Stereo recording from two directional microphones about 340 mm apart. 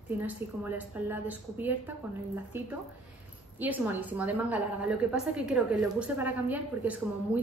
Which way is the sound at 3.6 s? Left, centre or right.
Centre.